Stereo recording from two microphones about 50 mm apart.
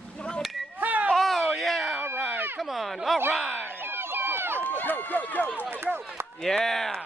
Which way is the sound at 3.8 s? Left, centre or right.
Right.